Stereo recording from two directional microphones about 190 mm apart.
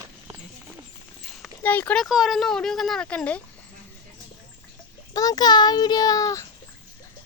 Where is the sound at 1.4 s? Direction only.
10° left (ahead or behind).